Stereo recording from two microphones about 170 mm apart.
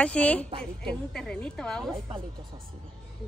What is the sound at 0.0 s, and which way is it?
A woman's voice, 10° left (ahead or behind).